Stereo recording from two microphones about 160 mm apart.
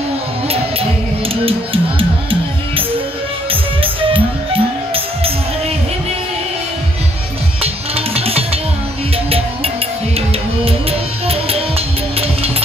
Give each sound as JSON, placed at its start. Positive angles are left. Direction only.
{"t": 1.3, "sound": "music", "side_deg": -35}
{"t": 3.8, "sound": "music", "side_deg": -35}
{"t": 7.6, "sound": "music", "side_deg": -40}
{"t": 10.6, "sound": "music", "side_deg": -40}